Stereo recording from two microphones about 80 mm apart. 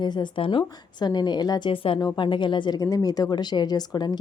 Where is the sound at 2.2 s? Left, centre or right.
Left.